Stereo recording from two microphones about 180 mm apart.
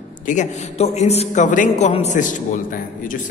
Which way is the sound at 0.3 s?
40° left (ahead or behind).